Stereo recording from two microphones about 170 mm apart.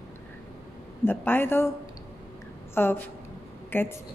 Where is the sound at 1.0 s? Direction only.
10° left (ahead or behind).